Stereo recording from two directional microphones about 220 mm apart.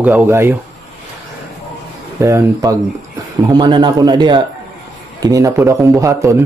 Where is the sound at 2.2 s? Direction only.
15° right (ahead or behind).